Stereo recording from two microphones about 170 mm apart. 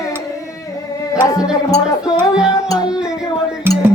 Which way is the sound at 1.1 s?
20° left (ahead or behind).